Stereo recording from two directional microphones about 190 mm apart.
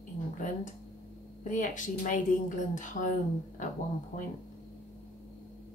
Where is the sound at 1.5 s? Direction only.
40° left (ahead or behind).